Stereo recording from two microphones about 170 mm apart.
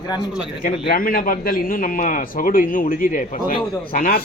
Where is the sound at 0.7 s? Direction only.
55° left (ahead or behind).